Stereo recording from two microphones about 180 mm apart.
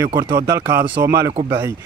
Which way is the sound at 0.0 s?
15° right (ahead or behind).